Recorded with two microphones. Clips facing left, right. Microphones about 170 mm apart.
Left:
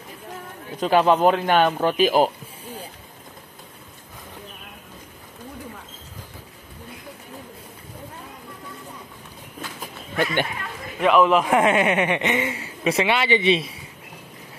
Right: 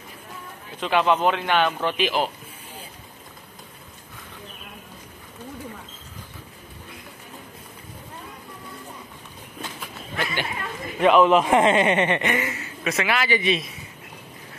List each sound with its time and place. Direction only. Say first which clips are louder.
0.7 s a man's voice: left 3 dB; 40° left (ahead or behind)
9.8 s a sound: left 6 dB; 50° left (ahead or behind)
11.0 s a man's voice: right 1 dB; 5° left (ahead or behind); by 13.7 s 30° left (ahead or behind)